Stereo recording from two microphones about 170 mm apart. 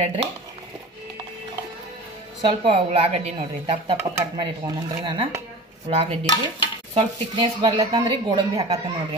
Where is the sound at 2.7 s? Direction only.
35° right (ahead or behind).